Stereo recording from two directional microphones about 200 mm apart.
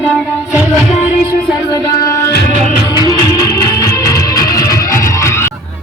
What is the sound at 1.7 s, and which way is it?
Music, 15° left (ahead or behind).